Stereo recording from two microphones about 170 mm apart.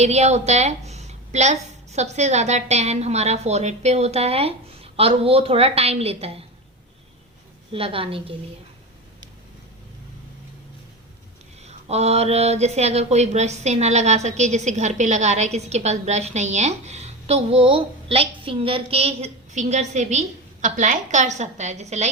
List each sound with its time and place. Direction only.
0.0 s speech: 40° right (ahead or behind)
7.7 s speech: 30° right (ahead or behind)
11.6 s speech: 40° right (ahead or behind)